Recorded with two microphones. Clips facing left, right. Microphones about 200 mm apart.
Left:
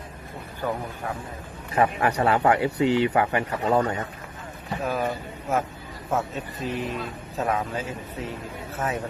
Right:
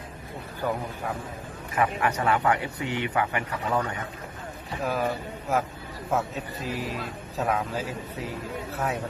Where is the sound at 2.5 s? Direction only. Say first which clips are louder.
Left 6 dB; 25° left (ahead or behind).